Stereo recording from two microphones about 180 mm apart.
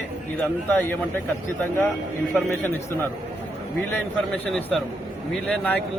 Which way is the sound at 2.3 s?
10° left (ahead or behind).